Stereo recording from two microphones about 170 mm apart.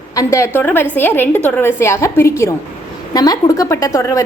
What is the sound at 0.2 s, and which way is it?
A woman's voice, 15° left (ahead or behind).